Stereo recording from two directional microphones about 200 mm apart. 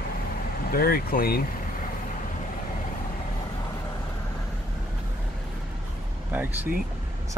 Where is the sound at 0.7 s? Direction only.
50° left (ahead or behind).